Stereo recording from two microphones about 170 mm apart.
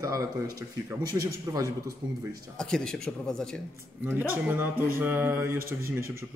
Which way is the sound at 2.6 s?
5° left (ahead or behind).